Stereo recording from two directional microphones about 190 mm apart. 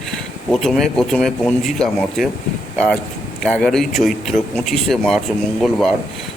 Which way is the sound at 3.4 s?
Centre (ahead or behind).